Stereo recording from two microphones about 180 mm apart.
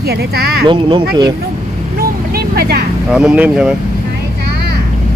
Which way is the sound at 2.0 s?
60° right (ahead or behind).